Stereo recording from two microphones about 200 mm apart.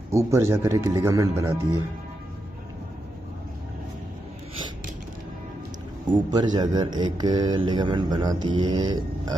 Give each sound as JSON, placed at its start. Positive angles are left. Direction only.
{"t": 0.1, "sound": "speech", "side_deg": -15}
{"t": 6.1, "sound": "speech", "side_deg": -20}